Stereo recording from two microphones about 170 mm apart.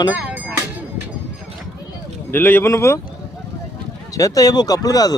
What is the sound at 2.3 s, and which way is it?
Speech, 10° left (ahead or behind).